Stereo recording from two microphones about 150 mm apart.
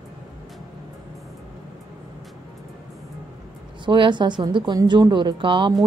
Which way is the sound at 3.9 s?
30° right (ahead or behind).